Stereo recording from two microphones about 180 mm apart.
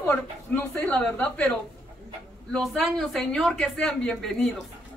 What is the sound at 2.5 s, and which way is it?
Speech, centre (ahead or behind).